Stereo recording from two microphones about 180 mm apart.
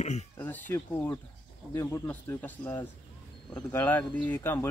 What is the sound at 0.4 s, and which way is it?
Speech, 10° left (ahead or behind).